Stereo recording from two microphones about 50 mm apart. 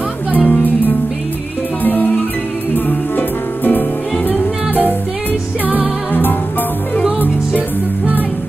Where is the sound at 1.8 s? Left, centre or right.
Left.